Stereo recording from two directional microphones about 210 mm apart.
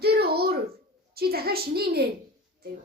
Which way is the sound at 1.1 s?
45° right (ahead or behind).